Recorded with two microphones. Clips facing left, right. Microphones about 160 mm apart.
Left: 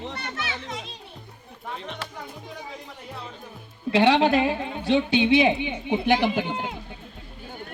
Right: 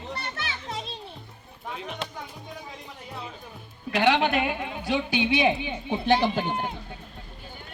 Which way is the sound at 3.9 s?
30° left (ahead or behind).